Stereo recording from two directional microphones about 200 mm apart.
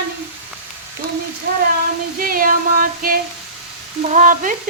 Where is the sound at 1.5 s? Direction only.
50° right (ahead or behind).